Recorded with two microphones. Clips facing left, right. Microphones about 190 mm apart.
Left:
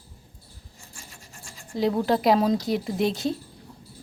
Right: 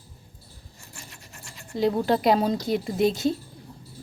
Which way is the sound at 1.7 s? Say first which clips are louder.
Even; centre (ahead or behind).